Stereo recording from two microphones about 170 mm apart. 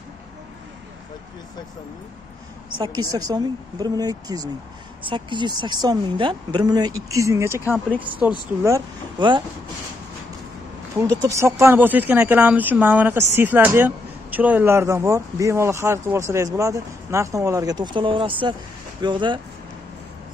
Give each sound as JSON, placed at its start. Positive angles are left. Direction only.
{"t": 2.8, "sound": "speech", "side_deg": -20}
{"t": 8.6, "sound": "speech", "side_deg": -25}
{"t": 11.2, "sound": "speech", "side_deg": -15}